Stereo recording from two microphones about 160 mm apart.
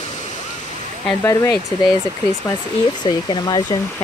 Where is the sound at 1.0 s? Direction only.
15° left (ahead or behind).